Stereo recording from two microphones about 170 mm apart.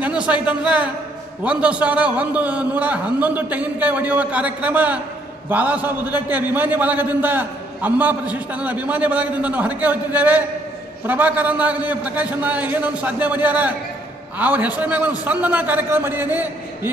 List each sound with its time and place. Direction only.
0.0 s a man's voice: 5° right (ahead or behind)